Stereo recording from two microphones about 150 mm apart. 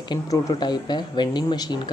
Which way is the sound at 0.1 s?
25° left (ahead or behind).